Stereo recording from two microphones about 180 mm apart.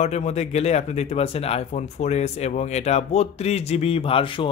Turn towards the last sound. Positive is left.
turn(degrees=30)  # may be behind; listen again after turning